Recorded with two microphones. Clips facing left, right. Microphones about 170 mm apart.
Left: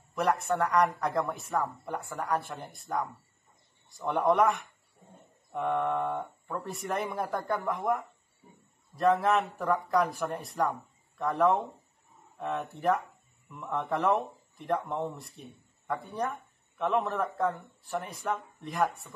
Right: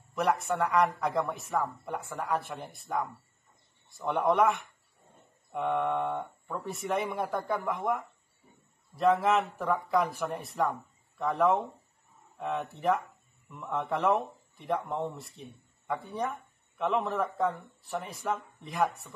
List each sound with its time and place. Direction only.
0.1 s speech: 5° right (ahead or behind)
16.7 s speech: centre (ahead or behind)